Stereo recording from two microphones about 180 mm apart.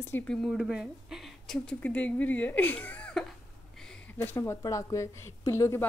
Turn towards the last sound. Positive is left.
turn(degrees=15)  # may be behind; listen again after turning